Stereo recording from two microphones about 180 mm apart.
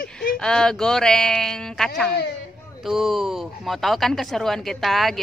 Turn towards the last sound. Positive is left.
turn(degrees=0)  # may be behind; listen again after turning